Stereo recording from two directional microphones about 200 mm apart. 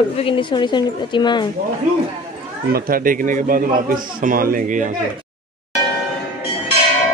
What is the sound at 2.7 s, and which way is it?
Speech, 45° right (ahead or behind).